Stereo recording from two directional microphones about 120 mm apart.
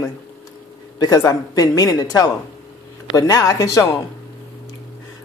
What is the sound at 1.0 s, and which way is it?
Speech, 30° left (ahead or behind).